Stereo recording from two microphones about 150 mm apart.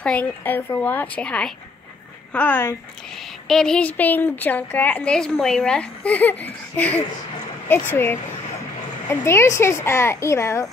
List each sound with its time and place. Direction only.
0.0 s a woman's voice: 10° left (ahead or behind)
3.4 s a woman's voice: 5° left (ahead or behind); by 10.7 s 20° left (ahead or behind)